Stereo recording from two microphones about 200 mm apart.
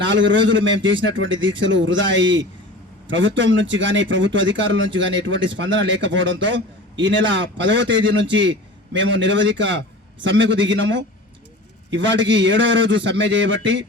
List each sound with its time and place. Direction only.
0.1 s a man's voice: 65° right (ahead or behind)